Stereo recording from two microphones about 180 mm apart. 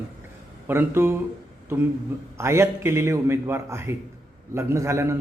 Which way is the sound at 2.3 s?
15° right (ahead or behind).